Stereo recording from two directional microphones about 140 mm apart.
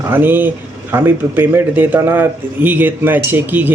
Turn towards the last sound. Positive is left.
turn(degrees=-15)  # may be behind; listen again after turning